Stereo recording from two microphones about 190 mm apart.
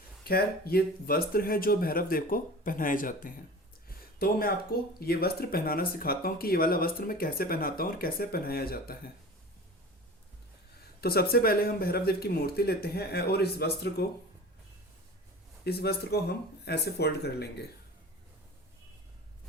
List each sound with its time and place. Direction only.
0.3 s speech: 55° left (ahead or behind)
3.8 s a sound: 50° left (ahead or behind)
4.9 s speech: 55° left (ahead or behind)
11.0 s speech: 55° left (ahead or behind)
15.6 s speech: 55° left (ahead or behind)